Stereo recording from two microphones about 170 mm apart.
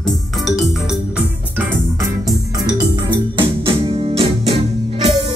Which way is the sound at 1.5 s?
10° right (ahead or behind).